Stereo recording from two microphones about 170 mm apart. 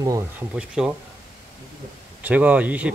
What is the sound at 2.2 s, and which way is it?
Speech, 10° right (ahead or behind).